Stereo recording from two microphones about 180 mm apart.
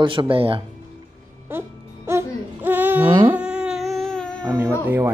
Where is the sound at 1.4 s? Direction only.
15° right (ahead or behind).